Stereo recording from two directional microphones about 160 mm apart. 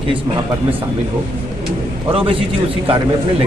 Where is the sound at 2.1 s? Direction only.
35° right (ahead or behind).